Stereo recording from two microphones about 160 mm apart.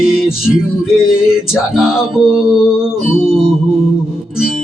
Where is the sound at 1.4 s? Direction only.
5° right (ahead or behind).